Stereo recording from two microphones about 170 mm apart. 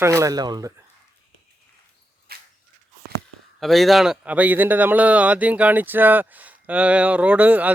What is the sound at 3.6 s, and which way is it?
Speech, centre (ahead or behind).